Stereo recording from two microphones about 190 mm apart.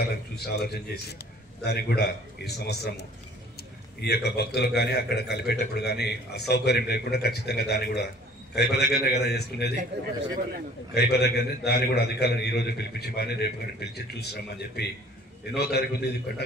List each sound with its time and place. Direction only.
0.0 s a man's voice: 55° left (ahead or behind)
11.0 s a man's voice: 60° left (ahead or behind)